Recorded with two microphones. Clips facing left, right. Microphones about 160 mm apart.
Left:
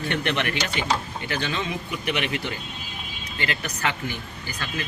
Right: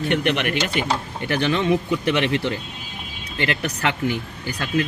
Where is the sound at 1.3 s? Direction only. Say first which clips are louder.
Right 8 dB; 60° right (ahead or behind).